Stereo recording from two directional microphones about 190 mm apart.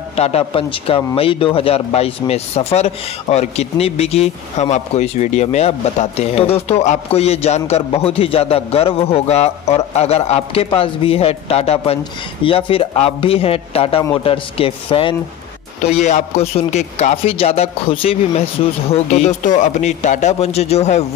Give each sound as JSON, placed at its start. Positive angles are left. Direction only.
{"t": 0.1, "sound": "a man's voice", "side_deg": 30}